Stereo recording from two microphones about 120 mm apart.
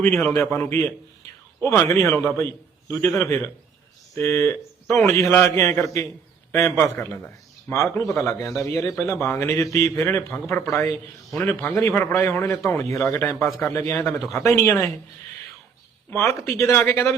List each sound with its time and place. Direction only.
0.3 s a man's voice: 25° left (ahead or behind)
16.0 s speech: 25° left (ahead or behind)